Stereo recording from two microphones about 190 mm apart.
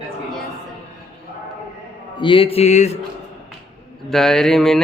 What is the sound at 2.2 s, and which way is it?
Speech, 25° left (ahead or behind).